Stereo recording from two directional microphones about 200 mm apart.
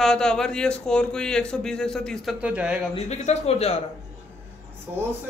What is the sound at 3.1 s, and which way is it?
Speech, 30° left (ahead or behind).